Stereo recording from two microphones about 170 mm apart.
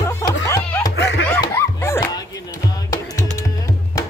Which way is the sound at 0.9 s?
85° left.